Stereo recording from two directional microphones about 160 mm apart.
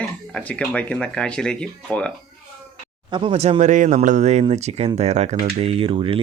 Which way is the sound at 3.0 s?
30° right (ahead or behind).